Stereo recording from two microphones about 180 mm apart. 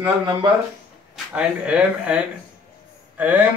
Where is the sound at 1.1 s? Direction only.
5° right (ahead or behind).